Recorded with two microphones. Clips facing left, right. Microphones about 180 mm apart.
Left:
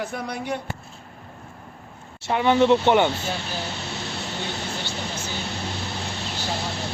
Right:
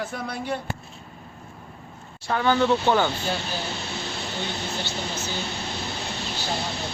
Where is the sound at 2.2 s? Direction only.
20° left (ahead or behind).